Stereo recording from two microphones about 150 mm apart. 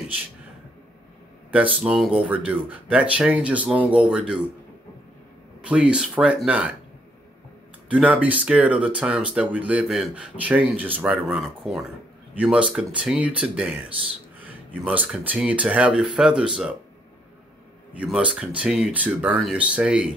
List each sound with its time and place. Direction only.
1.5 s speech: 10° right (ahead or behind)
5.7 s speech: 5° right (ahead or behind)
7.9 s speech: 10° right (ahead or behind)
17.9 s speech: 5° right (ahead or behind)